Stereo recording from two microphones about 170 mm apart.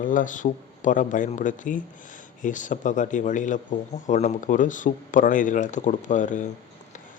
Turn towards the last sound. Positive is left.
turn(degrees=45)  # may be behind; listen again after turning